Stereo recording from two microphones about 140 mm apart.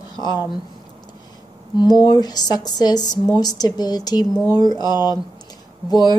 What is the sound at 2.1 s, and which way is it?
Speech, 30° left (ahead or behind).